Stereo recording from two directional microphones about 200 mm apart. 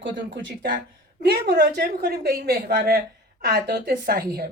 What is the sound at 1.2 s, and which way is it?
A woman's voice, 50° right (ahead or behind).